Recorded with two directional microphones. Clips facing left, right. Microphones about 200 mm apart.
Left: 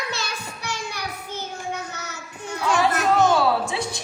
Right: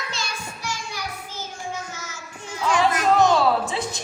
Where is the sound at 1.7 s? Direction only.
65° left (ahead or behind).